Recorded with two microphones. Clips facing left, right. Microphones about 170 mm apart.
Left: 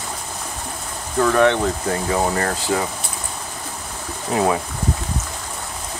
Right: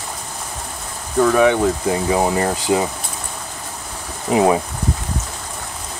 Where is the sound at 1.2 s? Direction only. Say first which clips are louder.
Right 2 dB; 5° right (ahead or behind).